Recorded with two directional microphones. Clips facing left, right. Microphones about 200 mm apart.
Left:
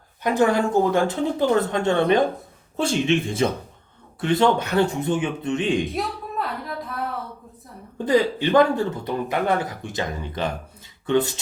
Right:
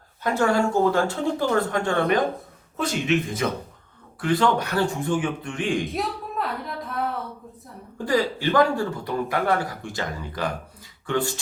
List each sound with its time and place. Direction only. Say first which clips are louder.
0.2 s speech: left 2 dB; 15° left (ahead or behind)
5.9 s a sound: left 1 dB; centre (ahead or behind)
7.9 s speech: left 4 dB; 20° left (ahead or behind)